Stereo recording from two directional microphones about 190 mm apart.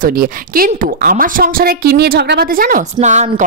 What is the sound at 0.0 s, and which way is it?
Speech, 45° right (ahead or behind).